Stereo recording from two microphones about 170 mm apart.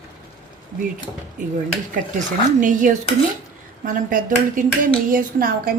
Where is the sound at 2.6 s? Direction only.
50° right (ahead or behind).